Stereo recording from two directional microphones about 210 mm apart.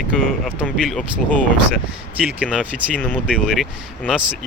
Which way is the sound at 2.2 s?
5° right (ahead or behind).